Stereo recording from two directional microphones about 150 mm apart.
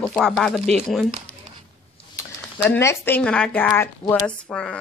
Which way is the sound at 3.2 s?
5° left (ahead or behind).